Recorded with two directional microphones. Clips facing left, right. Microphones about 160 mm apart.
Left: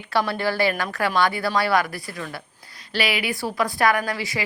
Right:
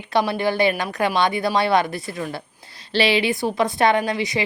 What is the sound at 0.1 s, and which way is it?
A woman's voice, 20° right (ahead or behind).